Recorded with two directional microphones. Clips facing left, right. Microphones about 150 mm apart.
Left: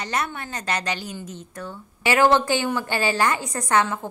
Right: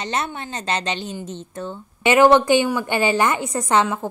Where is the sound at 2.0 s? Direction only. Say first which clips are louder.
Right 5 dB; 20° right (ahead or behind).